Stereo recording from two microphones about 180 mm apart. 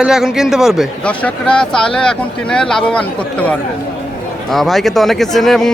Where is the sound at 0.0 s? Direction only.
5° right (ahead or behind).